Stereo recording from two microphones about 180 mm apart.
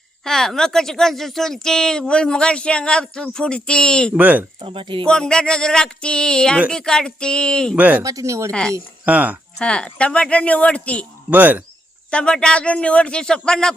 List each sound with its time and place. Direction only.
0.3 s speech: 5° left (ahead or behind)
4.1 s speech: 10° right (ahead or behind)
4.6 s speech: 30° right (ahead or behind)
5.0 s speech: 5° left (ahead or behind)
7.8 s speech: 10° right (ahead or behind)
9.6 s speech: 5° left (ahead or behind)
11.3 s speech: 10° right (ahead or behind)
12.1 s speech: 5° left (ahead or behind)